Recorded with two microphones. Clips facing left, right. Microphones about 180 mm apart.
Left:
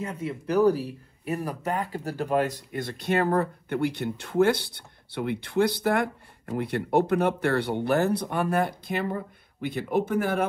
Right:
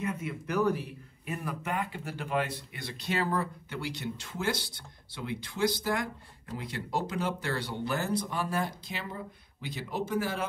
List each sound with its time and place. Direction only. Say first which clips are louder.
0.0 s speech: left 3 dB; 30° left (ahead or behind); by 10.4 s 55° left (ahead or behind)